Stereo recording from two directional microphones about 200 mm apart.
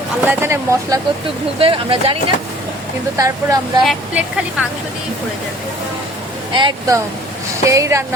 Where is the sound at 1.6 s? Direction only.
25° right (ahead or behind).